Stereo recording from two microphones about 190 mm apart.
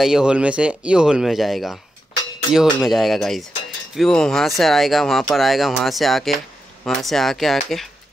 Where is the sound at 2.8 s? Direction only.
Centre (ahead or behind).